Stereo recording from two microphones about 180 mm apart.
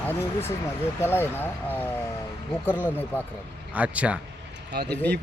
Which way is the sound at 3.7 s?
10° right (ahead or behind).